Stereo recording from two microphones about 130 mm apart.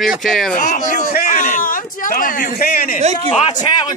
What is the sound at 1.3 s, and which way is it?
Speech, 80° left.